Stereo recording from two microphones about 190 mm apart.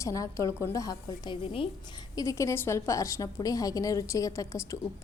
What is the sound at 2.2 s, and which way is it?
A woman's voice, 15° left (ahead or behind).